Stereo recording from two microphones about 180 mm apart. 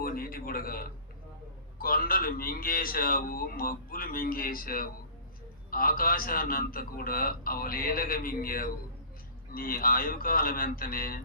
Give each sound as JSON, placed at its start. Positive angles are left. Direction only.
{"t": 0.0, "sound": "a man's voice", "side_deg": 55}